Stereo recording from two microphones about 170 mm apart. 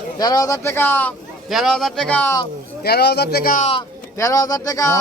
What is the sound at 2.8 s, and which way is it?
Speech, 70° left (ahead or behind).